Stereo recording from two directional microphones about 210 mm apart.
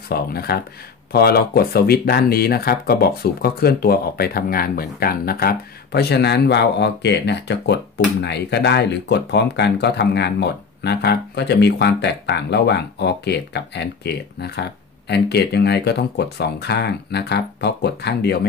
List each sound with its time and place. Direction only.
0.1 s speech: 45° left (ahead or behind)